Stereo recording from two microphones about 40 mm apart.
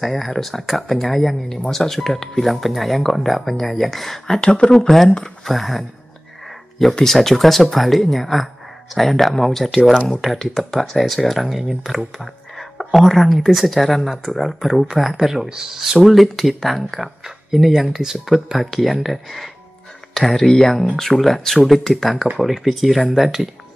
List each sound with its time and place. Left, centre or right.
0.0 s speech: centre
4.4 s speech: centre
7.0 s speech: centre
12.2 s a sound: centre
13.5 s speech: centre
20.2 s speech: centre
21.0 s speech: centre